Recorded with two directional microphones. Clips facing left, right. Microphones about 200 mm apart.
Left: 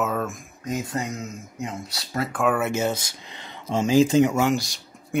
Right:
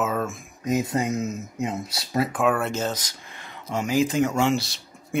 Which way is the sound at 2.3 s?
Centre (ahead or behind).